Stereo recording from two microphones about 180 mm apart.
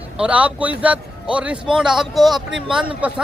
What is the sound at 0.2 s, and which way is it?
A man's voice, 5° right (ahead or behind).